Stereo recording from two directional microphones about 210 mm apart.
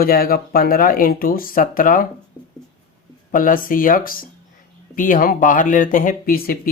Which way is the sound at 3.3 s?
40° left (ahead or behind).